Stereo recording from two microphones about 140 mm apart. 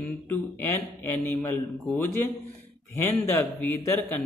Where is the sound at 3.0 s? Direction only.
15° left (ahead or behind).